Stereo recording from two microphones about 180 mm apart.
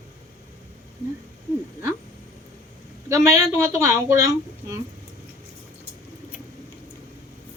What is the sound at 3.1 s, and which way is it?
Speech, 15° right (ahead or behind).